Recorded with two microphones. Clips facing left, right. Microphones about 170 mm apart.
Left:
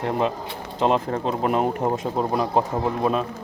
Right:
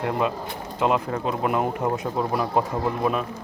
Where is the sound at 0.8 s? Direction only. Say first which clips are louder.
Left 2 dB; 30° left (ahead or behind).